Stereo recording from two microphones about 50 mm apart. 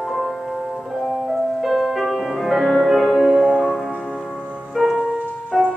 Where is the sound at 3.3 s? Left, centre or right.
Centre.